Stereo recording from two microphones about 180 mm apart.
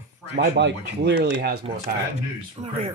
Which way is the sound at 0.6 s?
75° right (ahead or behind).